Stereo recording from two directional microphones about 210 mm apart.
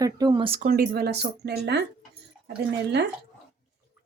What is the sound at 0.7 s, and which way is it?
Speech, 50° right (ahead or behind).